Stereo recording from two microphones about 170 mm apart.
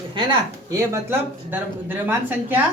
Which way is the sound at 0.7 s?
15° right (ahead or behind).